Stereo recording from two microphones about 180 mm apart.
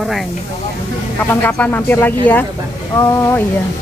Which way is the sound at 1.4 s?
10° left (ahead or behind).